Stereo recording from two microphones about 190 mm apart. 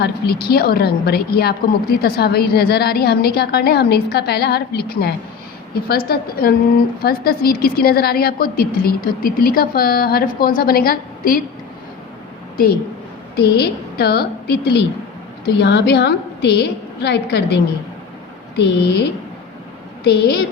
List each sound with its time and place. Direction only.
0.0 s a woman's voice: 55° left (ahead or behind)
13.3 s a woman's voice: 60° left (ahead or behind)